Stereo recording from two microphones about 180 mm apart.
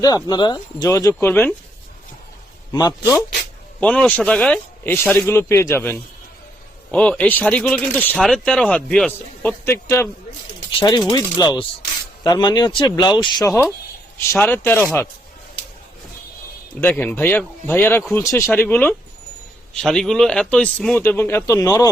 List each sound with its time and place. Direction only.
0.3 s speech: 25° left (ahead or behind); by 1.5 s 10° left (ahead or behind)
2.7 s speech: 20° left (ahead or behind)
3.8 s speech: 5° left (ahead or behind)
10.7 s speech: 25° left (ahead or behind)
13.5 s speech: centre (ahead or behind)
16.8 s speech: 10° left (ahead or behind)